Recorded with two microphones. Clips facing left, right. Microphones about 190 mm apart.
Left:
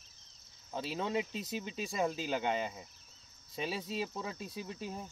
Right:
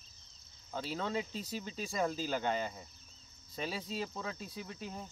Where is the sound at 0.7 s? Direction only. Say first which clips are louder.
Left 2 dB; 15° left (ahead or behind).